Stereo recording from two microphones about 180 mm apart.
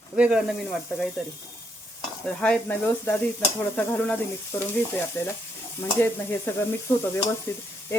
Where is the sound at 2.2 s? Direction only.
5° left (ahead or behind).